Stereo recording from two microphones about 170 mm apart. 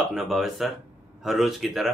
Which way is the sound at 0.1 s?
Centre (ahead or behind).